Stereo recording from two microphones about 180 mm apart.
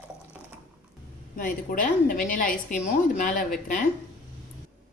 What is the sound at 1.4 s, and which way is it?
A woman's voice, 45° left (ahead or behind).